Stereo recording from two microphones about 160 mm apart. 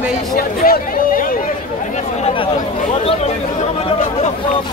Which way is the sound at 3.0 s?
40° left (ahead or behind).